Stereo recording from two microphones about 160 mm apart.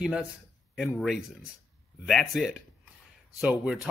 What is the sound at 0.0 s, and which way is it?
Speech, 5° right (ahead or behind).